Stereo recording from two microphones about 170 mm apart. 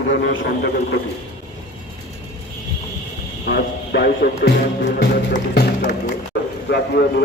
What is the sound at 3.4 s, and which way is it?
Speech, 70° left (ahead or behind).